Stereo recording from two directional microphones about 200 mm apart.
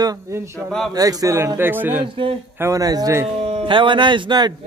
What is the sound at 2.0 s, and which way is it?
Speech, 25° right (ahead or behind).